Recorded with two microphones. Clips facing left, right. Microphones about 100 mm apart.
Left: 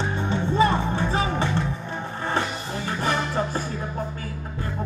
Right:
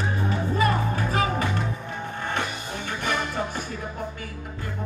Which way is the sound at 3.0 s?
35° left (ahead or behind).